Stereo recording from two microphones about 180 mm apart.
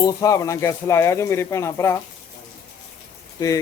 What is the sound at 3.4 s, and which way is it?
Speech, 20° left (ahead or behind).